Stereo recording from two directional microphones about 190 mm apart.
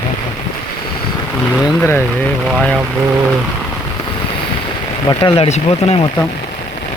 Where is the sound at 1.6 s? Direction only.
Centre (ahead or behind).